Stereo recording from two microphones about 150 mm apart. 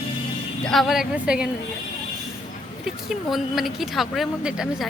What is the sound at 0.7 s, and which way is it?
Speech, centre (ahead or behind).